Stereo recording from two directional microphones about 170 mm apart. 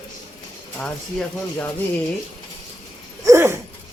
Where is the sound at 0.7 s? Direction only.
5° left (ahead or behind).